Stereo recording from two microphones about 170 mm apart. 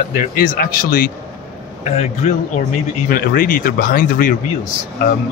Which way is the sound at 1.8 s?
40° left (ahead or behind).